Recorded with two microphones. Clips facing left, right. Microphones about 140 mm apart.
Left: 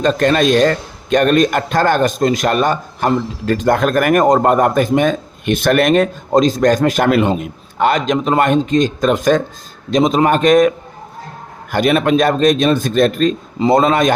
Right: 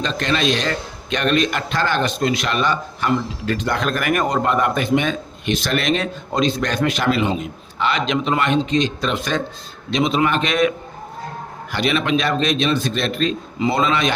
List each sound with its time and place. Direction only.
0.0 s a man's voice: 50° left (ahead or behind)